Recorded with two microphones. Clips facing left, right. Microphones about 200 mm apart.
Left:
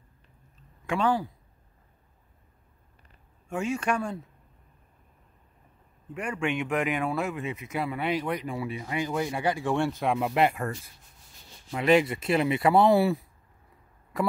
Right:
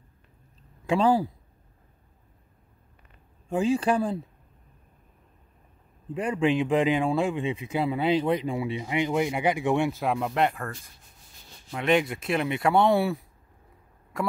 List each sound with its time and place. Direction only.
0.8 s speech: 35° right (ahead or behind)
3.4 s speech: 30° right (ahead or behind)
6.4 s speech: 30° right (ahead or behind)
9.9 s speech: centre (ahead or behind)
11.7 s speech: centre (ahead or behind)